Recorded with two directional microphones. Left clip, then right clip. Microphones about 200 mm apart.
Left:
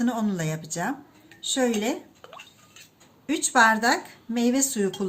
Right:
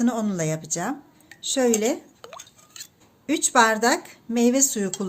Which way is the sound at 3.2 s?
55° right (ahead or behind).